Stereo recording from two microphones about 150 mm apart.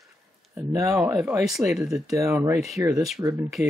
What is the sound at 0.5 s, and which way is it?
Speech, 20° right (ahead or behind).